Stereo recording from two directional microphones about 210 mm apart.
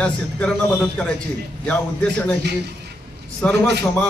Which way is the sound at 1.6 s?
5° left (ahead or behind).